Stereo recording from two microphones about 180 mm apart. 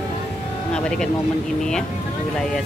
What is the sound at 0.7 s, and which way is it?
Rain on surface, 5° left (ahead or behind).